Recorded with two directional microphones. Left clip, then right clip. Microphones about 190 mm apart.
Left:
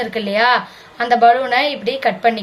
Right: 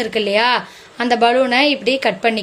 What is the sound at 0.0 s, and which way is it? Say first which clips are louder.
A woman's voice: even; 55° right (ahead or behind).